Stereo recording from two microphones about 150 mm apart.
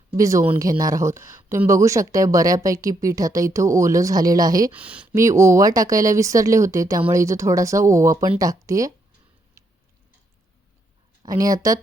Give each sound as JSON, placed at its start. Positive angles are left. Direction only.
{"t": 0.1, "sound": "speech", "side_deg": -20}
{"t": 4.7, "sound": "speech", "side_deg": -10}
{"t": 5.1, "sound": "speech", "side_deg": -20}
{"t": 9.6, "sound": "tick-tock", "side_deg": -20}
{"t": 11.2, "sound": "speech", "side_deg": -25}